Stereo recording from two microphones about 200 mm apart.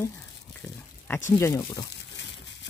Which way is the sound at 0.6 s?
10° left (ahead or behind).